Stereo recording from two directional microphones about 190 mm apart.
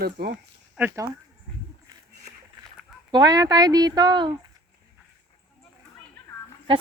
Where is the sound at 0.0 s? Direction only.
55° right (ahead or behind).